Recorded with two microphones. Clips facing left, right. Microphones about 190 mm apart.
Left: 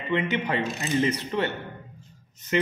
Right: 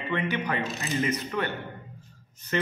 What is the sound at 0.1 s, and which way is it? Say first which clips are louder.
A man's voice: left 3 dB; 25° left (ahead or behind).